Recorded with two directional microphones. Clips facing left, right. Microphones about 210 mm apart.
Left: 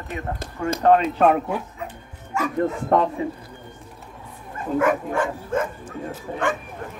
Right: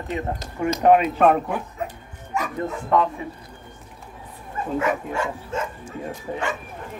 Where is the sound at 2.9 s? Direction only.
45° left (ahead or behind).